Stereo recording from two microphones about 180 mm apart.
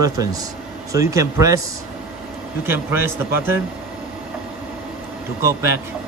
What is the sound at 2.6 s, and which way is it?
Speech, 10° right (ahead or behind).